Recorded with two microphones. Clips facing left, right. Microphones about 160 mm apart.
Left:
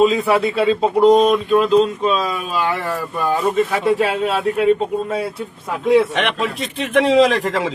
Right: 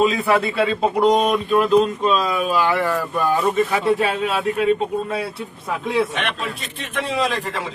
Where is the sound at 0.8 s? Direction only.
5° right (ahead or behind).